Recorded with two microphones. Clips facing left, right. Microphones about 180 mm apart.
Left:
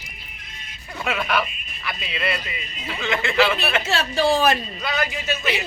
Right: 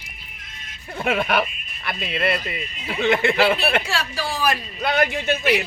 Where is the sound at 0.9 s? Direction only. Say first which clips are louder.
Right 3 dB; 50° right (ahead or behind).